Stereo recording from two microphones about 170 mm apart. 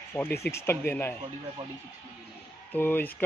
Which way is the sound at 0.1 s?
15° left (ahead or behind).